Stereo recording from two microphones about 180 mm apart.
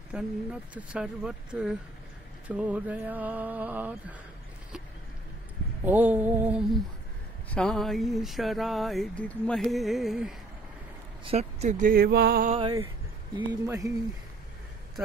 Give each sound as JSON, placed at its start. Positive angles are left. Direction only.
{"t": 0.1, "sound": "a sound", "side_deg": -5}
{"t": 2.4, "sound": "speech", "side_deg": -10}
{"t": 5.9, "sound": "speech", "side_deg": -10}
{"t": 7.4, "sound": "a sound", "side_deg": 5}
{"t": 11.2, "sound": "speech", "side_deg": -35}
{"t": 12.5, "sound": "speech", "side_deg": -25}